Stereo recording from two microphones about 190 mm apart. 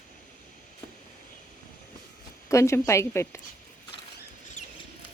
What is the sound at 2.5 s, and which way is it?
Speech, 15° left (ahead or behind).